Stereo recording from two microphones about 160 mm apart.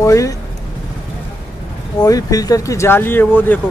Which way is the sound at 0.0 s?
20° left (ahead or behind).